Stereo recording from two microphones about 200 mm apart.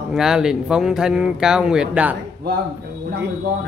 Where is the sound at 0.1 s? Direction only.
Centre (ahead or behind).